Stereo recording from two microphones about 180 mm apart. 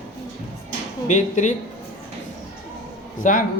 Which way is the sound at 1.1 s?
45° left (ahead or behind).